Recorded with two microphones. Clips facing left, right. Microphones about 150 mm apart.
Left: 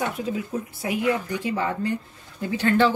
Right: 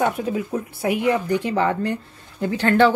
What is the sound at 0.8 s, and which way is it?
A woman's voice, 65° right (ahead or behind).